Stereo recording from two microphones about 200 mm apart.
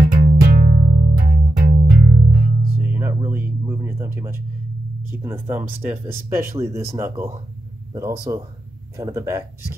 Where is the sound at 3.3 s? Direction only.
10° right (ahead or behind).